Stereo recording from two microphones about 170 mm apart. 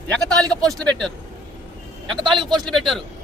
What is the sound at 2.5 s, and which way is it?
Speech, centre (ahead or behind).